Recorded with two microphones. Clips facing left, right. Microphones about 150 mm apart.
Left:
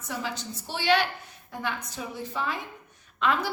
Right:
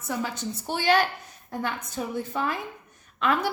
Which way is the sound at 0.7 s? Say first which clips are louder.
Right 2 dB; 50° right (ahead or behind).